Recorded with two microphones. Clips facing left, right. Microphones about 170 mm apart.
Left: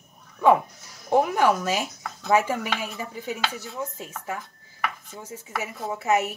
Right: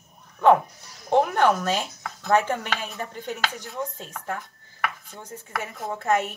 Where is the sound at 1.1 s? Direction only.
5° left (ahead or behind).